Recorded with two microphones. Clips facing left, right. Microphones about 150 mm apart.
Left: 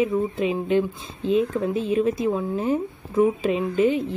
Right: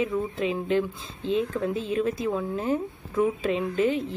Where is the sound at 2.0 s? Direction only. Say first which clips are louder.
Left 4 dB; 25° left (ahead or behind).